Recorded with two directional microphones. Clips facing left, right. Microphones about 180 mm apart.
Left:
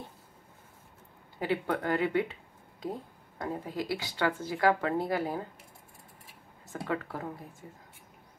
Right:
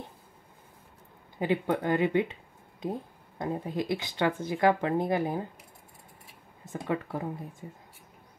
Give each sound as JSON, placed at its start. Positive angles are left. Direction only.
{"t": 1.4, "sound": "speech", "side_deg": -20}
{"t": 6.7, "sound": "speech", "side_deg": -20}